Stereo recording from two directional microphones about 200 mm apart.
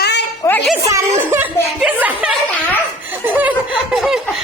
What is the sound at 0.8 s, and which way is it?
Speech, 15° right (ahead or behind).